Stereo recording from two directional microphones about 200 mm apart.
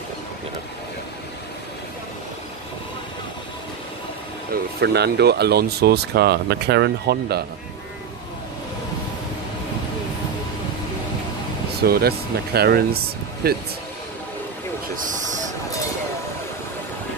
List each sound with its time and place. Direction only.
4.7 s speech: 55° right (ahead or behind)
11.8 s speech: 50° right (ahead or behind)
15.0 s speech: 40° right (ahead or behind)